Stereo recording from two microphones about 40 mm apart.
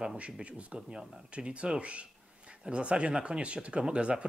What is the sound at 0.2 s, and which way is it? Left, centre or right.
Speech, right.